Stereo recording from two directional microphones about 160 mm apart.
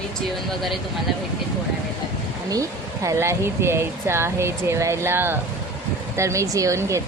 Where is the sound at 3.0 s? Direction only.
15° right (ahead or behind).